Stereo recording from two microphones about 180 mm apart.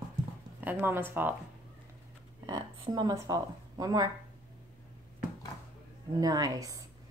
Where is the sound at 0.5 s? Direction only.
10° right (ahead or behind).